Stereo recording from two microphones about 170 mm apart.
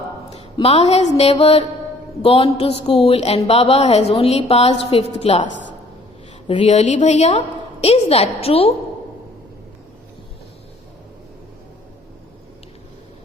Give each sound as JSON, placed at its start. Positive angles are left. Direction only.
{"t": 0.5, "sound": "a woman's voice", "side_deg": 35}
{"t": 6.6, "sound": "a woman's voice", "side_deg": 45}